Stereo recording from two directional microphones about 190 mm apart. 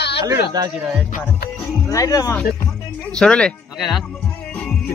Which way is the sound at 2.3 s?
5° left (ahead or behind).